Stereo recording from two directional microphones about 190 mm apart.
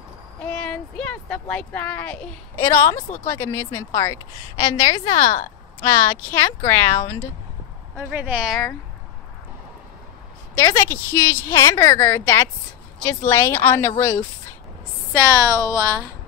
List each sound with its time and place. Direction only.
0.5 s speech: 5° left (ahead or behind)
7.9 s speech: 10° right (ahead or behind)
10.5 s speech: 15° left (ahead or behind)
15.1 s a woman's voice: 20° right (ahead or behind)